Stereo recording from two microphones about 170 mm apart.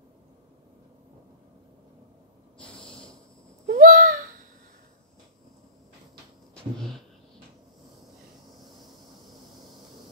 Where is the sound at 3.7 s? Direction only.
55° right (ahead or behind).